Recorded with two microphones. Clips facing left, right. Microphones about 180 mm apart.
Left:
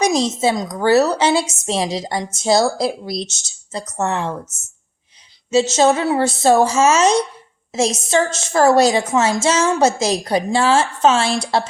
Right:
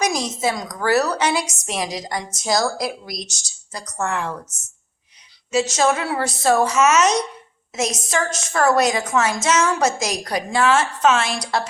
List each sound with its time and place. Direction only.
0.0 s a woman's voice: 25° left (ahead or behind)
5.5 s a woman's voice: 25° left (ahead or behind)